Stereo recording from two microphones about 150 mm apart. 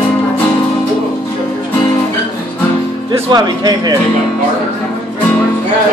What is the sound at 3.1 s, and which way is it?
Speech, 30° right (ahead or behind).